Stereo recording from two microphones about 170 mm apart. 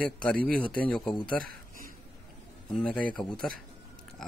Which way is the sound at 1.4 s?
60° right (ahead or behind).